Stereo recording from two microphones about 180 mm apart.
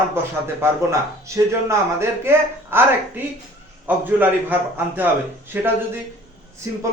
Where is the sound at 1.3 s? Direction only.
15° right (ahead or behind).